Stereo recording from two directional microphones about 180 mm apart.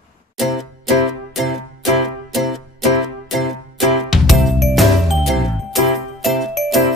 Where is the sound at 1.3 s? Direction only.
Centre (ahead or behind).